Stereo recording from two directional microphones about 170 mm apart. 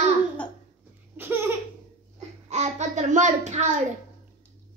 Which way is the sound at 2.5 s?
40° right (ahead or behind).